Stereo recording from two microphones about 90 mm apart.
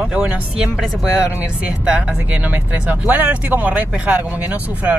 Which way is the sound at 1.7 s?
15° right (ahead or behind).